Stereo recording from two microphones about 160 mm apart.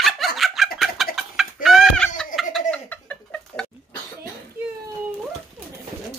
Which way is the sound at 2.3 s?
Centre (ahead or behind).